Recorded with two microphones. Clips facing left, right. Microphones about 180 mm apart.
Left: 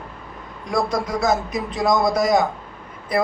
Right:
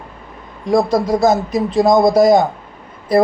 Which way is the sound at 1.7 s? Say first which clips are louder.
Right 8 dB; 25° right (ahead or behind).